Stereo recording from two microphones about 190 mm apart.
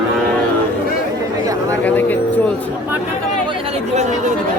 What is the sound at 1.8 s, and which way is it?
Speech, 10° left (ahead or behind).